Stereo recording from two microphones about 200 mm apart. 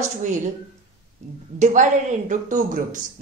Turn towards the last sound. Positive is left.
turn(degrees=-40)  # may be behind; listen again after turning